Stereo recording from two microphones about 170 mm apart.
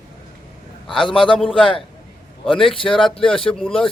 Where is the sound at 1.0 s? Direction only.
30° left (ahead or behind).